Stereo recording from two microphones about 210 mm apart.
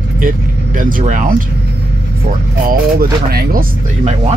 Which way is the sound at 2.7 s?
45° right (ahead or behind).